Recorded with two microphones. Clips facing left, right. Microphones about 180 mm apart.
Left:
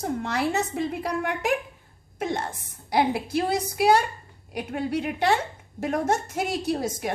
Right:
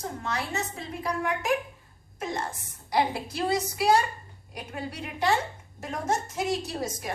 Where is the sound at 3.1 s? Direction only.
60° left (ahead or behind).